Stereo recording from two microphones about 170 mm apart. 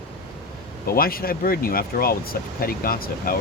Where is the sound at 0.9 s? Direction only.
60° left (ahead or behind).